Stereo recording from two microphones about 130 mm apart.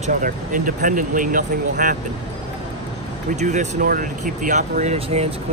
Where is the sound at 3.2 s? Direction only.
70° right (ahead or behind).